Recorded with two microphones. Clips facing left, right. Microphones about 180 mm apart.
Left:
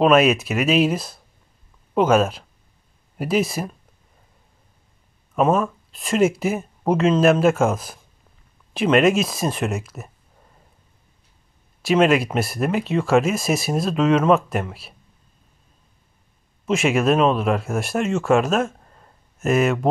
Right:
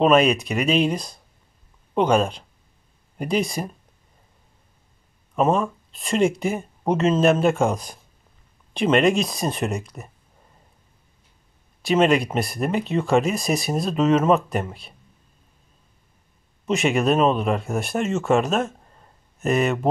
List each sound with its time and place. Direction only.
0.0 s speech: 5° left (ahead or behind)
5.3 s speech: 5° left (ahead or behind)
11.8 s speech: centre (ahead or behind)
16.6 s speech: centre (ahead or behind)